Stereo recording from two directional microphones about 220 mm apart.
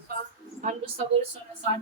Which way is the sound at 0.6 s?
30° right (ahead or behind).